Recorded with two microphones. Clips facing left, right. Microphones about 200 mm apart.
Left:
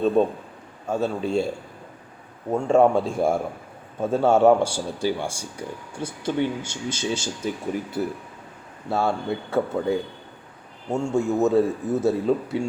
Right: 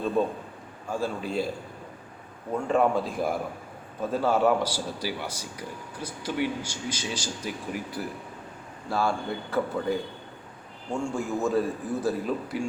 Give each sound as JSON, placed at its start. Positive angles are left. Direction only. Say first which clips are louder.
{"t": 0.9, "sound": "speech", "louder": "left 6 dB", "side_deg": 25}
{"t": 2.6, "sound": "speech", "louder": "left 6 dB", "side_deg": 25}